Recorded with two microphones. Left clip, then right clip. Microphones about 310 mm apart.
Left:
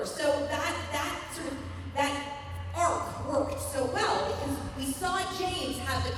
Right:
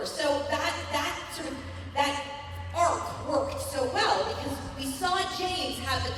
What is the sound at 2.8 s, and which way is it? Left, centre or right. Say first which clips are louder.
Music: right 2 dB; centre.